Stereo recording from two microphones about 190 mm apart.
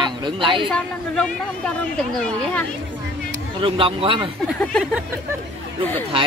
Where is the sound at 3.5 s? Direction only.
30° right (ahead or behind).